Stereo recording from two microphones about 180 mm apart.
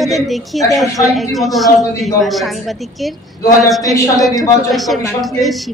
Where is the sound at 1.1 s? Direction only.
Centre (ahead or behind).